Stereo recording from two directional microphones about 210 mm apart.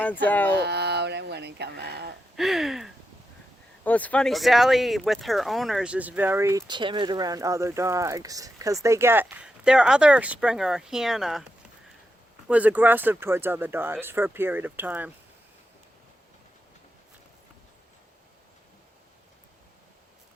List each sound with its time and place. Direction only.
0.0 s speech: 10° left (ahead or behind)
0.5 s speech: 50° right (ahead or behind)
2.3 s speech: centre (ahead or behind)
12.5 s speech: 5° right (ahead or behind)